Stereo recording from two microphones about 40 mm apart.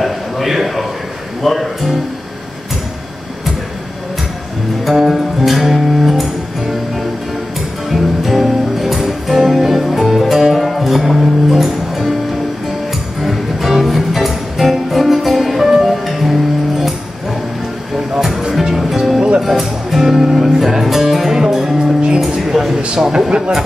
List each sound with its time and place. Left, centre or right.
0.0 s a sound: centre
1.4 s speech: centre
4.8 s music: centre
7.9 s music: centre
13.2 s music: centre
18.4 s music: centre
19.1 s music: right
19.4 s music: centre
22.2 s a sound: centre
22.9 s a man's voice: centre